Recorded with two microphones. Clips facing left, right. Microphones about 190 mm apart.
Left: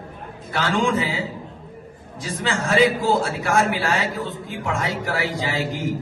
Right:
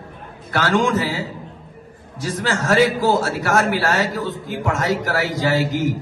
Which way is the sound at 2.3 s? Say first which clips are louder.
Right 3 dB; 60° right (ahead or behind).